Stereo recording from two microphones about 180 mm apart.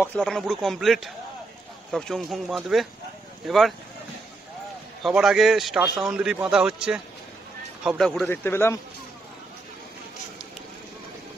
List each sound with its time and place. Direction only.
0.0 s a man's voice: 5° left (ahead or behind)
5.0 s a man's voice: centre (ahead or behind)
8.3 s a man's voice: 15° left (ahead or behind)